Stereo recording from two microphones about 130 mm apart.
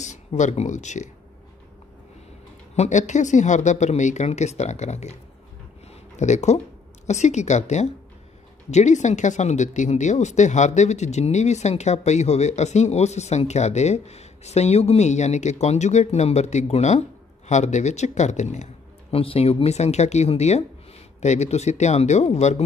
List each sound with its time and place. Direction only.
0.0 s speech: 65° left (ahead or behind)
2.7 s speech: 65° left (ahead or behind)
6.1 s speech: 60° left (ahead or behind)